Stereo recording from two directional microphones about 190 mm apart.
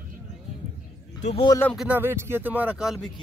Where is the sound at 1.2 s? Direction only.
25° left (ahead or behind).